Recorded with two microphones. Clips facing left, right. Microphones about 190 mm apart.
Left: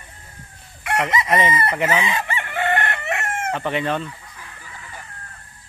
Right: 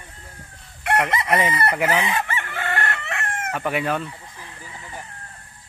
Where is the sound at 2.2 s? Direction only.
15° left (ahead or behind).